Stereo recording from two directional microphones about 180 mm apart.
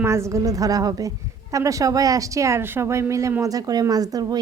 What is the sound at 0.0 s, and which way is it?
Speech, 15° right (ahead or behind).